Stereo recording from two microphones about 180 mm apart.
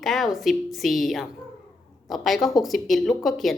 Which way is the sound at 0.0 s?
Centre (ahead or behind).